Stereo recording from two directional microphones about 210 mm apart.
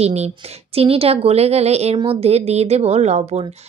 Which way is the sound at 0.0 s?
30° right (ahead or behind).